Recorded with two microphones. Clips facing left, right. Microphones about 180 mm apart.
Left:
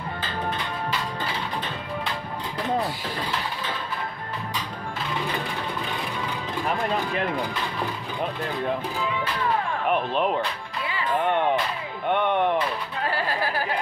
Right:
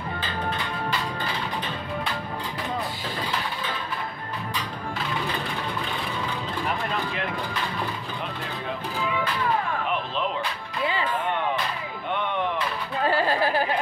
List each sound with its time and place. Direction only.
9.8 s music: 50° left (ahead or behind)
12.1 s music: 55° left (ahead or behind)
13.0 s music: 25° right (ahead or behind)